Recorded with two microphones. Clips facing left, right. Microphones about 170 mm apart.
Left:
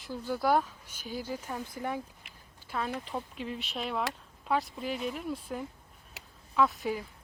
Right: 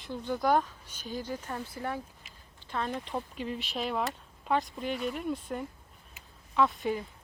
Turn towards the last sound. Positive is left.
turn(degrees=0)  # may be behind; listen again after turning